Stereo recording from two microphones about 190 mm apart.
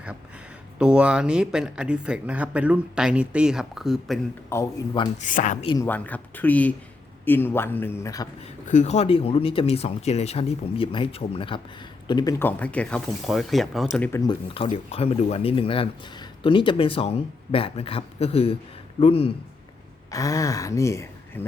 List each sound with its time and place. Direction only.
0.8 s speech: 5° right (ahead or behind)
4.4 s speech: 15° left (ahead or behind)
5.2 s speech: 40° left (ahead or behind)
5.6 s speech: 20° left (ahead or behind)
5.9 s speech: 10° left (ahead or behind)
8.6 s speech: 40° left (ahead or behind); by 12.3 s 25° left (ahead or behind)
12.4 s speech: 10° left (ahead or behind)
14.1 s speech: 20° left (ahead or behind)
14.5 s speech: 30° left (ahead or behind)
20.1 s speech: 20° left (ahead or behind)